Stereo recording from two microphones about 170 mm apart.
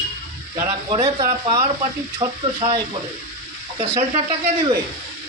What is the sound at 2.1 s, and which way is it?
Speech, 30° right (ahead or behind).